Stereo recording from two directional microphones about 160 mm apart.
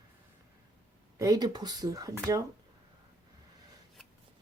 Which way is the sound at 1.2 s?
25° right (ahead or behind).